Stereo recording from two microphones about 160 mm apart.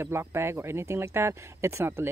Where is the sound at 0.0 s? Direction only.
15° right (ahead or behind).